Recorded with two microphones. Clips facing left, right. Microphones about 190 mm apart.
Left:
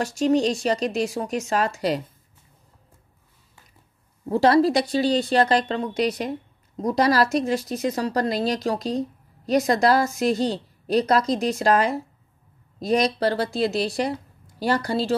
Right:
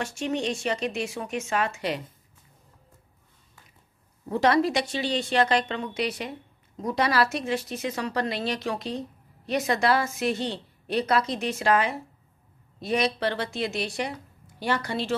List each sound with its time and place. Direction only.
0.0 s a woman's voice: 40° left (ahead or behind)
4.3 s a woman's voice: 35° left (ahead or behind)